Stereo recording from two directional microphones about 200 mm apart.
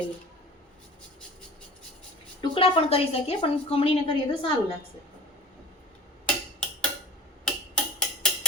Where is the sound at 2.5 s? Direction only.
30° left (ahead or behind).